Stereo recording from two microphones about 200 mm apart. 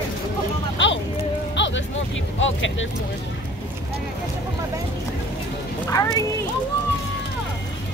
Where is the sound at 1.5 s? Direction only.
65° left (ahead or behind).